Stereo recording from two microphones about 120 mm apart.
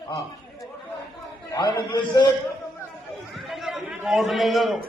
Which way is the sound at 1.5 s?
35° left (ahead or behind).